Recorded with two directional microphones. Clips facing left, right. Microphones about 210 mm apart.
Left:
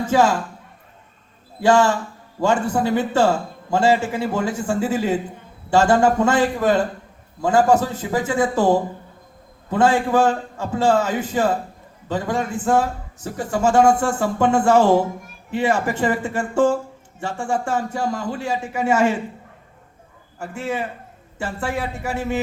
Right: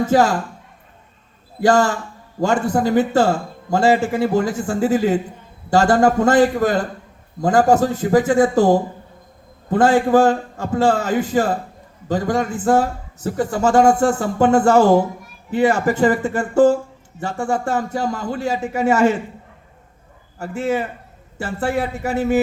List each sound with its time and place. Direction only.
1.6 s speech: 40° right (ahead or behind)
9.6 s speech: 40° right (ahead or behind)
20.4 s speech: 40° right (ahead or behind)